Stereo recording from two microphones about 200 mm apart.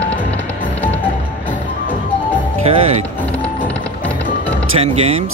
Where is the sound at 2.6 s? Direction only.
30° right (ahead or behind).